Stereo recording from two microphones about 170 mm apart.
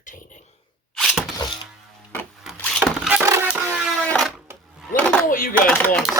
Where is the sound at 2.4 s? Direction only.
Centre (ahead or behind).